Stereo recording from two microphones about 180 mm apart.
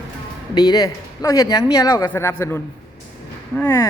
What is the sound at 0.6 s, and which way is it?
Speech, 20° left (ahead or behind).